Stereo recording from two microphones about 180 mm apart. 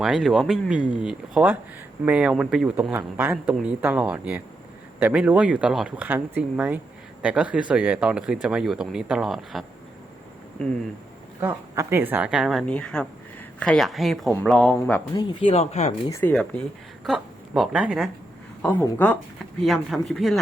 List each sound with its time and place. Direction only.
0.0 s speech: centre (ahead or behind)
11.3 s speech: 15° right (ahead or behind); by 15.0 s 10° left (ahead or behind)
15.1 s speech: 25° left (ahead or behind)
16.0 s speech: 15° left (ahead or behind)
16.3 s speech: 5° left (ahead or behind)
18.6 s speech: 10° left (ahead or behind)